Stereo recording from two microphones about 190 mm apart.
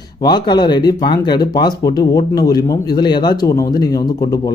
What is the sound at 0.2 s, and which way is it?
Speech, 20° left (ahead or behind).